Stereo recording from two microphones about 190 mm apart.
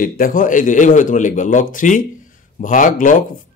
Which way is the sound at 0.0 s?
45° left (ahead or behind).